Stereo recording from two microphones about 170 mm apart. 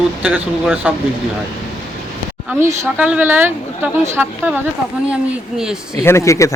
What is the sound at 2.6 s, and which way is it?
A woman's voice, 10° right (ahead or behind).